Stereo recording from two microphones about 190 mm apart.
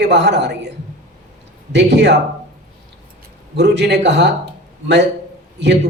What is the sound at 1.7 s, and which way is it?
Speech, 65° right (ahead or behind).